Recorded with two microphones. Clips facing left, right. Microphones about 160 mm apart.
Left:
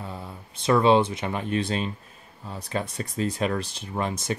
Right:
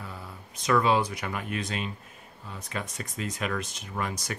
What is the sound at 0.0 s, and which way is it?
Speech, 25° left (ahead or behind).